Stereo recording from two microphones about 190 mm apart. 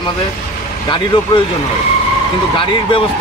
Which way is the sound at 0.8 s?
25° left (ahead or behind).